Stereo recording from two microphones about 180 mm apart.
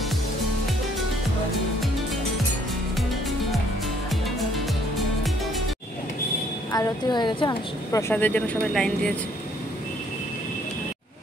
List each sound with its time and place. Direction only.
3.0 s music: centre (ahead or behind)
6.7 s a woman's voice: 20° left (ahead or behind)
8.1 s speech: 10° left (ahead or behind)